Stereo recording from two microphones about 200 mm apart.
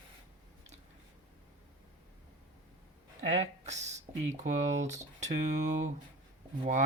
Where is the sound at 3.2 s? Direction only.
30° right (ahead or behind).